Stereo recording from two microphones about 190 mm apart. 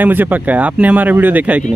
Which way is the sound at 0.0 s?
10° right (ahead or behind).